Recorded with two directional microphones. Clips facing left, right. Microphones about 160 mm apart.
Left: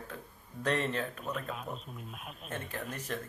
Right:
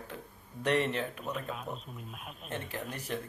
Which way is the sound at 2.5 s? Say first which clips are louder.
Right 1 dB; 15° right (ahead or behind).